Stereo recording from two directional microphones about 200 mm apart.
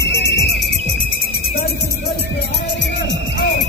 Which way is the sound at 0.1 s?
55° left (ahead or behind).